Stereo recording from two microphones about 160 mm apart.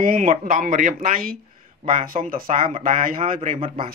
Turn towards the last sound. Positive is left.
turn(degrees=-55)  # may be behind; listen again after turning